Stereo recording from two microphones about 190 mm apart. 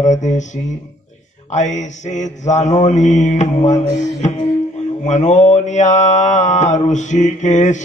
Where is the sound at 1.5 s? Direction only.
40° left (ahead or behind).